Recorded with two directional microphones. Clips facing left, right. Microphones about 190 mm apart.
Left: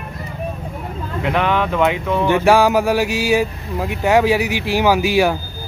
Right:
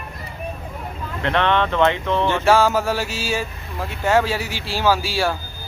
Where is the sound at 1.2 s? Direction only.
5° left (ahead or behind).